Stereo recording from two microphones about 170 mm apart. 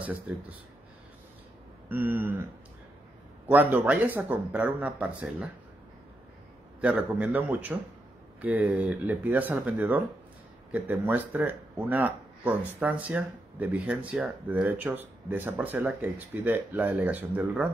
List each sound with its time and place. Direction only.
1.9 s speech: 10° right (ahead or behind)
3.4 s speech: 10° right (ahead or behind)
6.8 s speech: 10° right (ahead or behind)